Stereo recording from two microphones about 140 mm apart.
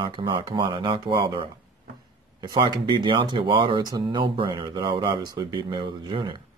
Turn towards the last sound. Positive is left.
turn(degrees=-35)  # may be behind; listen again after turning